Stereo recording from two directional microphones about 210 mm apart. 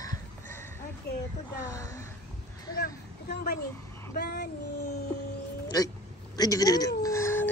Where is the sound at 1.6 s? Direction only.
15° left (ahead or behind).